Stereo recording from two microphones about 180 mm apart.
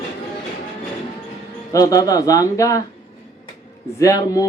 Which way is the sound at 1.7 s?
20° left (ahead or behind).